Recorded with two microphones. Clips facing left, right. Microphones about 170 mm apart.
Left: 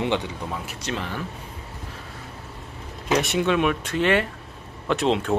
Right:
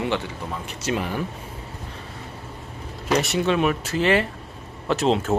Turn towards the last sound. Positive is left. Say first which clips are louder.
# right 1 dB
turn(degrees=0)  # may be behind; listen again after turning